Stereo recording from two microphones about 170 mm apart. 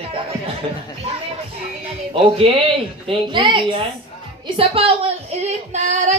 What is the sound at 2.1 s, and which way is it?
A child's voice, 35° right (ahead or behind).